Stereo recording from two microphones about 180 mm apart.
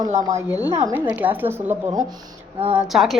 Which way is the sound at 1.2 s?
10° right (ahead or behind).